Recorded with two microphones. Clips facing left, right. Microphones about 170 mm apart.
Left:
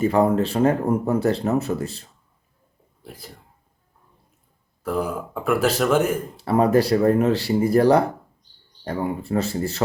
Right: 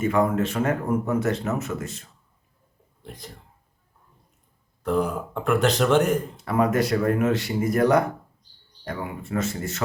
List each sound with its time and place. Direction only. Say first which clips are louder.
0.0 s speech: left 3 dB; 35° left (ahead or behind)
3.0 s speech: even; 5° left (ahead or behind)
4.8 s speech: right 1 dB; 5° left (ahead or behind)
6.3 s speech: left 4 dB; 30° left (ahead or behind)